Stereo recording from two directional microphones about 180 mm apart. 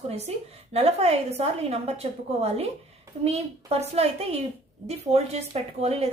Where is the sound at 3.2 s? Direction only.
35° right (ahead or behind).